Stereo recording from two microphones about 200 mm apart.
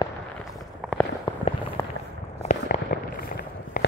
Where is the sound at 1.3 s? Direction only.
15° left (ahead or behind).